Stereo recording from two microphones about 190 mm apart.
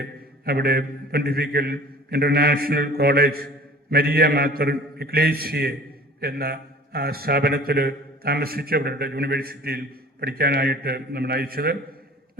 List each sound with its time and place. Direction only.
0.0 s a man's voice: 55° right (ahead or behind)